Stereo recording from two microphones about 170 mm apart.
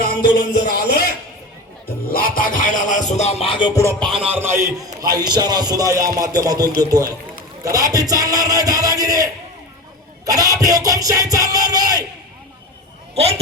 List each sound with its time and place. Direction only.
0.2 s music: 75° left (ahead or behind)
2.0 s music: 55° left (ahead or behind); by 3.9 s 20° left (ahead or behind)
4.0 s a man's voice: 5° right (ahead or behind)
4.9 s music: 25° right (ahead or behind)
13.1 s speech: 35° right (ahead or behind)